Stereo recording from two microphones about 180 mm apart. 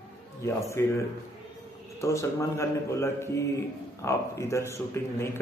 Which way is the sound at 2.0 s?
15° left (ahead or behind).